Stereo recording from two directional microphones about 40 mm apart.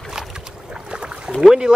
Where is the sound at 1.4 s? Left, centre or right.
Centre.